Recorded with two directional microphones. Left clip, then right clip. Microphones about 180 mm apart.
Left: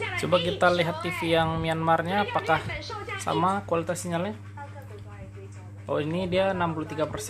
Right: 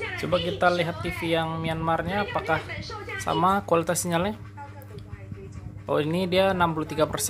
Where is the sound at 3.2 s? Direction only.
10° right (ahead or behind); by 4.4 s 25° right (ahead or behind).